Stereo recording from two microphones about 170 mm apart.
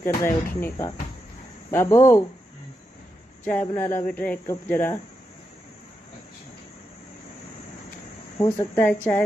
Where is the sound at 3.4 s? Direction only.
15° left (ahead or behind).